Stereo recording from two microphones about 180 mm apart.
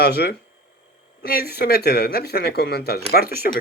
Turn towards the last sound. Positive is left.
turn(degrees=60)  # may be behind; listen again after turning